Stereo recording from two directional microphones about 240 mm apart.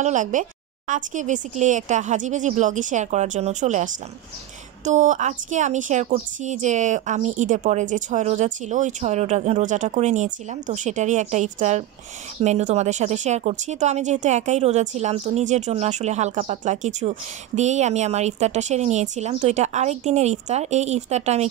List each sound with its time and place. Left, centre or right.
0.0 s a woman's voice: right